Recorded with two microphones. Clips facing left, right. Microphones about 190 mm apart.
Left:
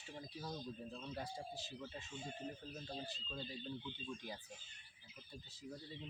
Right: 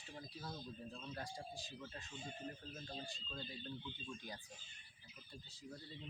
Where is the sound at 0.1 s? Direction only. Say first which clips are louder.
Left 3 dB; 10° left (ahead or behind).